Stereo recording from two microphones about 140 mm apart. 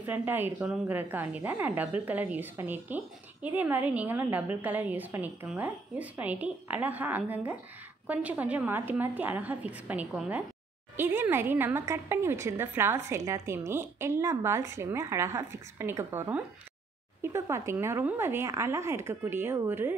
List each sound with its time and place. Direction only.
0.0 s a woman's voice: 15° right (ahead or behind)